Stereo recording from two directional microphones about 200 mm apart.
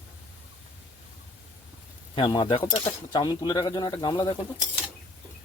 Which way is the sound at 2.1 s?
20° left (ahead or behind).